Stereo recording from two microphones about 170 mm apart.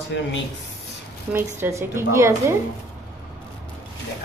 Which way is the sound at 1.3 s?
15° right (ahead or behind).